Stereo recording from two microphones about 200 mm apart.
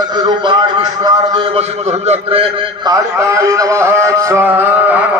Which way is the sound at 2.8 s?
15° right (ahead or behind).